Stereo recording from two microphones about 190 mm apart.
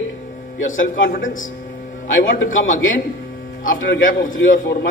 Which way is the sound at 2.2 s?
90° left.